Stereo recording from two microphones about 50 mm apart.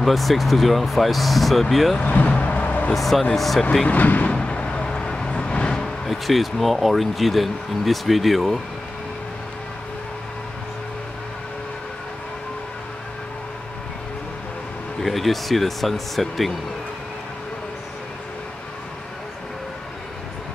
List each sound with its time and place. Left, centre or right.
0.0 s speech: centre
2.1 s vehicle: left
2.9 s speech: centre
3.8 s speech: left
4.3 s vehicle: left
6.0 s speech: centre
15.0 s speech: centre